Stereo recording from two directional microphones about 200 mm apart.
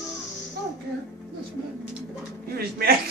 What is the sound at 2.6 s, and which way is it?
Speech, 50° right (ahead or behind).